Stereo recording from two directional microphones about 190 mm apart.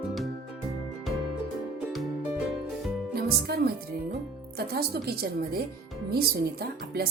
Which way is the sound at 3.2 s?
55° right (ahead or behind).